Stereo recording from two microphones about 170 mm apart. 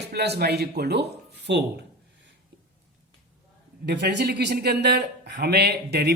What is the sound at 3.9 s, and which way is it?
A man's voice, 75° right (ahead or behind).